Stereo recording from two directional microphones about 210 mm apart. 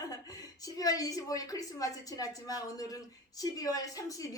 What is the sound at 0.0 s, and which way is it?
A woman's voice, 15° left (ahead or behind).